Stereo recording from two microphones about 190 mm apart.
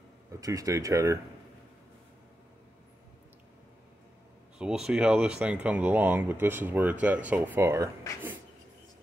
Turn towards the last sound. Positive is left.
turn(degrees=-15)  # may be behind; listen again after turning